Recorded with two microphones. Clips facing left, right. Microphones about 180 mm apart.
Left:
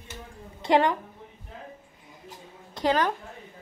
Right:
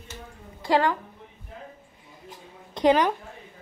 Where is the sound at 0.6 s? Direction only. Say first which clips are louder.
Left 1 dB; 20° left (ahead or behind).